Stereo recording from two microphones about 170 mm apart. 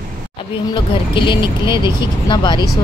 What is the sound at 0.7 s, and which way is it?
Speech, 30° left (ahead or behind).